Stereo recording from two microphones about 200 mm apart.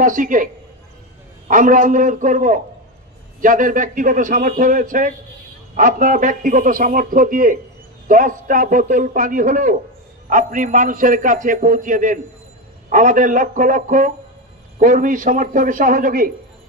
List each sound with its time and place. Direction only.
0.0 s a man's voice: 40° right (ahead or behind)
1.5 s a man's voice: 40° right (ahead or behind)